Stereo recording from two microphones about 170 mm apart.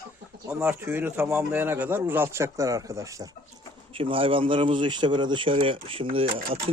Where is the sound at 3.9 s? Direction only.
30° right (ahead or behind).